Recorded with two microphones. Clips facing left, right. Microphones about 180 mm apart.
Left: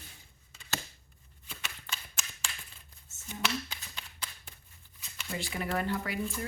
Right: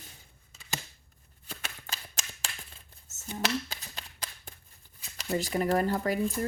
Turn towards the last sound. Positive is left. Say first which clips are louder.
# right 5 dB
turn(degrees=-40)  # may be behind; listen again after turning